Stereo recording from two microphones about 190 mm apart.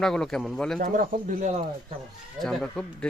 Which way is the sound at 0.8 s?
45° right (ahead or behind).